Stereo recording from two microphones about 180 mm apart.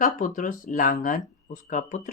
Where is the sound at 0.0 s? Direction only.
50° left (ahead or behind).